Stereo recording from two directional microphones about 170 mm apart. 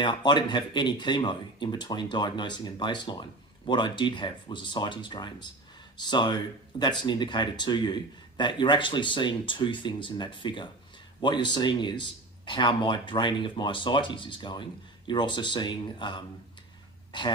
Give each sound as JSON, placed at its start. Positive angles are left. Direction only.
{"t": 0.0, "sound": "speech", "side_deg": 25}